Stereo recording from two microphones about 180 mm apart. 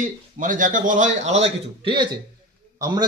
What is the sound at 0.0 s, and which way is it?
A man's voice, 45° right (ahead or behind).